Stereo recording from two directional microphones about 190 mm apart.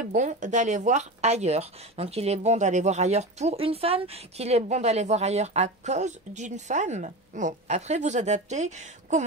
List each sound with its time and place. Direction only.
0.0 s speech: 40° right (ahead or behind)